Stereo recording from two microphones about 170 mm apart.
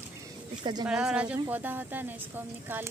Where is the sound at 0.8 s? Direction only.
5° right (ahead or behind).